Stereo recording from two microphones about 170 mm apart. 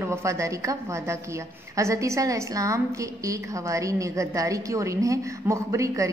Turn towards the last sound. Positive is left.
turn(degrees=-20)  # may be behind; listen again after turning